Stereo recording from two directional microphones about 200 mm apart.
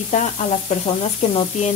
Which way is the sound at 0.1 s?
35° left (ahead or behind).